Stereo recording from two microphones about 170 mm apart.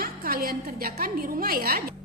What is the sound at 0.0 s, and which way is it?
A woman's voice, 65° right (ahead or behind).